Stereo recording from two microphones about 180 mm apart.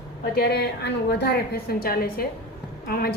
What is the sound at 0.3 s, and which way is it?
A woman's voice, 65° left (ahead or behind).